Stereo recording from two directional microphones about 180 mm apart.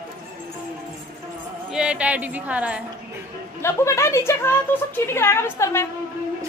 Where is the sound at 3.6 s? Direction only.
15° left (ahead or behind).